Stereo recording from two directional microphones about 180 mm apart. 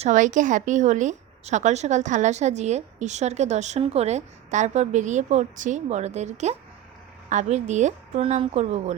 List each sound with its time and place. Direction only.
0.0 s a woman's voice: 45° right (ahead or behind)